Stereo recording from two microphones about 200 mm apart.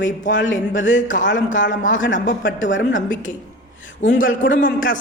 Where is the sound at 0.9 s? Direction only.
40° left (ahead or behind).